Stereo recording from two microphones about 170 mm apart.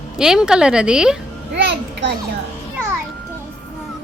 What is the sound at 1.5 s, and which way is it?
Speech, 75° right (ahead or behind).